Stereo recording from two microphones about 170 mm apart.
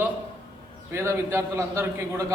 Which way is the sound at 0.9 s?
15° right (ahead or behind).